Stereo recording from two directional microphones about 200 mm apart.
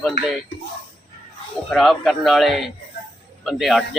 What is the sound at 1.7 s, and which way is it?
Speech, centre (ahead or behind).